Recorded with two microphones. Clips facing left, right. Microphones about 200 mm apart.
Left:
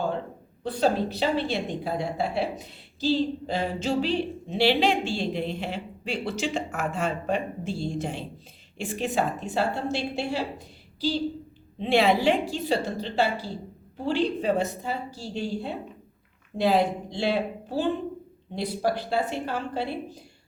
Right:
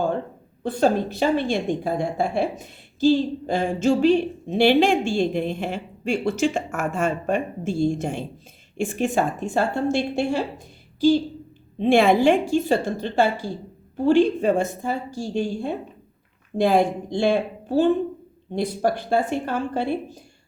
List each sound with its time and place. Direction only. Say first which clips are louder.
0.6 s a woman's voice: right 4 dB; 50° right (ahead or behind)
11.8 s a woman's voice: right 5 dB; 50° right (ahead or behind)